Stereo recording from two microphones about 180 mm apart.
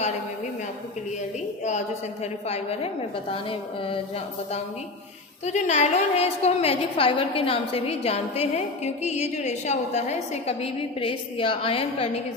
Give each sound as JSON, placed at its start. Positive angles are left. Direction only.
{"t": 2.5, "sound": "a woman's voice", "side_deg": 35}
{"t": 5.5, "sound": "a woman's voice", "side_deg": 40}